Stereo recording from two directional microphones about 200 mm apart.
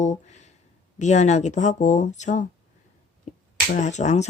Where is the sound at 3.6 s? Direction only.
40° left (ahead or behind).